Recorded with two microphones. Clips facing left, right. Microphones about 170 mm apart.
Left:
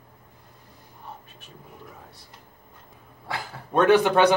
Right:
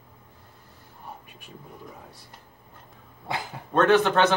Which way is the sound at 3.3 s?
20° right (ahead or behind).